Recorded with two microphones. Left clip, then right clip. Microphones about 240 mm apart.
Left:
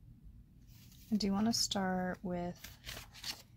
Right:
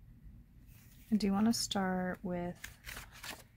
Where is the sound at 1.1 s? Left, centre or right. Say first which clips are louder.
Right 2 dB; centre.